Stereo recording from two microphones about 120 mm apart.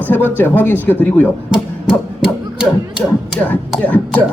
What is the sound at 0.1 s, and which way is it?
Speech, 15° left (ahead or behind).